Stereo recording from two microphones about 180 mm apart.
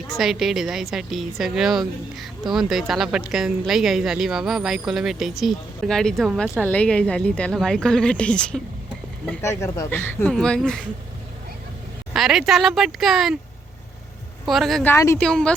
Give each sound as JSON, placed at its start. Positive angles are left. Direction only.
{"t": 0.1, "sound": "speech", "side_deg": 0}
{"t": 12.1, "sound": "speech", "side_deg": 0}
{"t": 14.4, "sound": "speech", "side_deg": 0}
{"t": 14.9, "sound": "speech", "side_deg": 15}
{"t": 15.2, "sound": "speech", "side_deg": 5}